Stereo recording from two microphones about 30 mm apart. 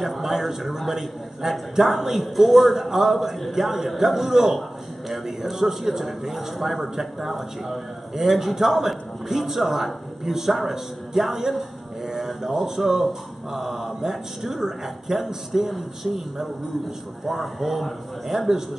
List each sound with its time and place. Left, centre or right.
0.0 s a man's voice: centre
2.3 s a man's voice: centre